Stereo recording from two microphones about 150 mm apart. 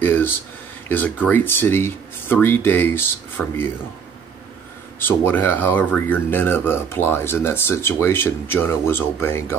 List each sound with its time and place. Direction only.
0.0 s a sound: 15° left (ahead or behind)
0.8 s speech: 10° left (ahead or behind)
4.9 s speech: 15° left (ahead or behind)